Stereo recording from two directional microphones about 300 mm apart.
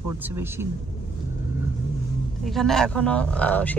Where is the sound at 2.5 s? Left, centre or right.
Centre.